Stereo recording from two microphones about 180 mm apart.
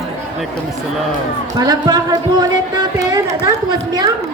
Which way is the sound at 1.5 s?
20° right (ahead or behind).